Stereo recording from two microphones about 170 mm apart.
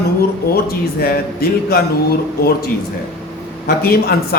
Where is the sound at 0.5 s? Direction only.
65° left (ahead or behind).